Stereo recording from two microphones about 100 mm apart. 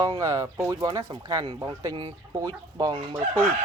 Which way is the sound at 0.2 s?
35° right (ahead or behind).